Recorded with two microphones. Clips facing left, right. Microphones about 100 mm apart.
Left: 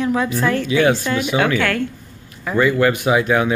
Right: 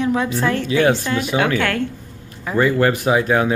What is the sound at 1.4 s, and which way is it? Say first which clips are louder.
Speech: left 1 dB; 25° right (ahead or behind).